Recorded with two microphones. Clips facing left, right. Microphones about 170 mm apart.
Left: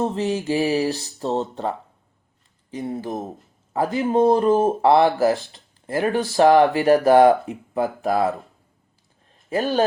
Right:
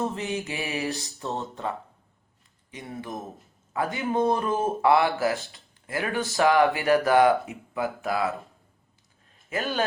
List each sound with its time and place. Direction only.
0.0 s speech: 30° left (ahead or behind)
9.5 s speech: 35° left (ahead or behind)